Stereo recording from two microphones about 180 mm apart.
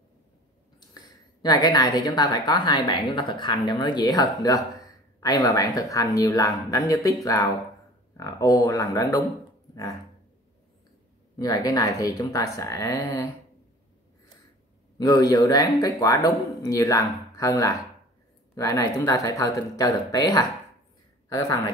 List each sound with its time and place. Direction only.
1.4 s a woman's voice: 20° left (ahead or behind)
11.3 s a woman's voice: 20° left (ahead or behind)
15.0 s a woman's voice: 20° left (ahead or behind)